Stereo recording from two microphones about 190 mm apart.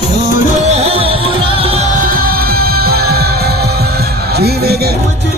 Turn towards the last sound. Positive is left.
turn(degrees=-55)  # may be behind; listen again after turning